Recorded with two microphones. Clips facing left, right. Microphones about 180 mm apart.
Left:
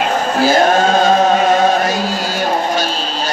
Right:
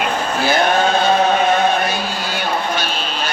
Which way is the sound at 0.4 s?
45° left (ahead or behind).